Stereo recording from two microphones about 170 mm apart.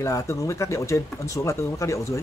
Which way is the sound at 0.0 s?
20° left (ahead or behind).